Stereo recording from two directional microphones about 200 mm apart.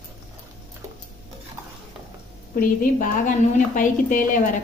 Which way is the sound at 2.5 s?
45° left (ahead or behind).